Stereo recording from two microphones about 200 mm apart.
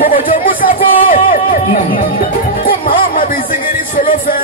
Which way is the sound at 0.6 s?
45° left (ahead or behind).